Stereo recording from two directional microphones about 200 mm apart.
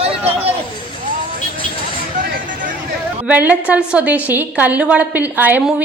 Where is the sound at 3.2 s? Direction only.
5° right (ahead or behind).